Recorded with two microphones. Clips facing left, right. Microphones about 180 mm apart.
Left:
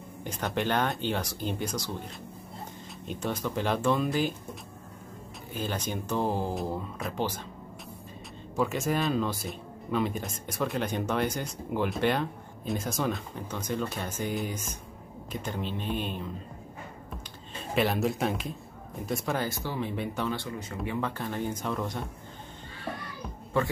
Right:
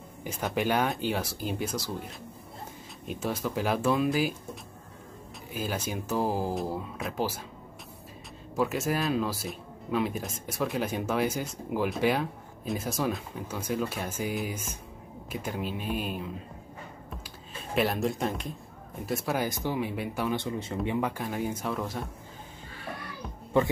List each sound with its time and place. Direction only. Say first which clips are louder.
0.2 s speech: right 1 dB; 5° right (ahead or behind)
5.5 s speech: even; 5° right (ahead or behind)
8.5 s speech: even; 5° right (ahead or behind)
17.7 s speech: left 1 dB; centre (ahead or behind)
19.4 s speech: right 2 dB; 15° right (ahead or behind)
20.3 s speech: right 4 dB; 25° right (ahead or behind)
20.8 s speech: right 1 dB; 15° right (ahead or behind)
23.5 s speech: right 3 dB; 20° right (ahead or behind)